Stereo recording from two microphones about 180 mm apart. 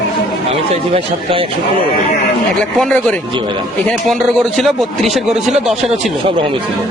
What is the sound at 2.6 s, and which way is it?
A man's voice, 5° left (ahead or behind).